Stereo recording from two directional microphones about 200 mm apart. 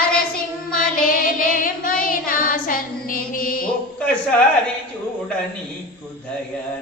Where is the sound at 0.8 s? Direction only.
45° left (ahead or behind).